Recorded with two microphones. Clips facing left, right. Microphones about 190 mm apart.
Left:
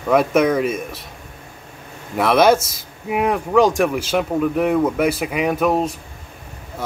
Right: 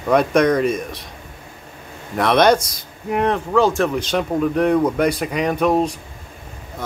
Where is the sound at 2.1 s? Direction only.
5° left (ahead or behind).